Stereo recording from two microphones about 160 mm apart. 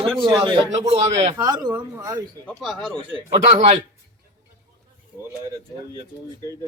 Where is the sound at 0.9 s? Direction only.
45° right (ahead or behind).